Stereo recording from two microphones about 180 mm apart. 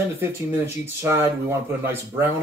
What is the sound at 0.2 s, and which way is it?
Speech, 15° right (ahead or behind).